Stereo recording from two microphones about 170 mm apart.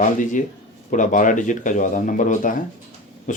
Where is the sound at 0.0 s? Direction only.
50° left (ahead or behind).